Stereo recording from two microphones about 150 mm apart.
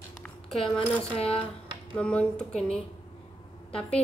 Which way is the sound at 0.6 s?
35° left (ahead or behind).